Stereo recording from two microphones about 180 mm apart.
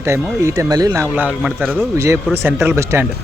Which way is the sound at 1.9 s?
15° right (ahead or behind).